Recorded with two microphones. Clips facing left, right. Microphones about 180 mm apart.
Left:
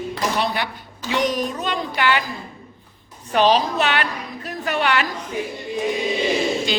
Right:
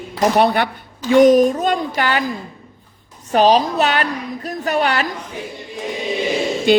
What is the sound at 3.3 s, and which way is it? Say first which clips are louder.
A woman's voice: right 4 dB; 40° right (ahead or behind).